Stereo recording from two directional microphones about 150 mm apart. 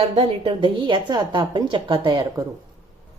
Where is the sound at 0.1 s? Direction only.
40° right (ahead or behind).